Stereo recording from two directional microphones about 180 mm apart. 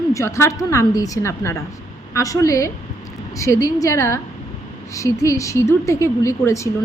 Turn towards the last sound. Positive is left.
turn(degrees=15)  # may be behind; listen again after turning